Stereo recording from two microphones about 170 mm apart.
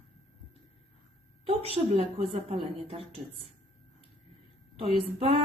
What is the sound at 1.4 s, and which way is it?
Speech, 35° right (ahead or behind).